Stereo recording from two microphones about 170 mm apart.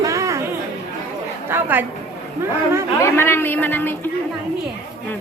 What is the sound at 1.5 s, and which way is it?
Speech, 10° right (ahead or behind).